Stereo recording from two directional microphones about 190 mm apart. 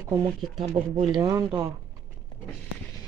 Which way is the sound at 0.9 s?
20° right (ahead or behind).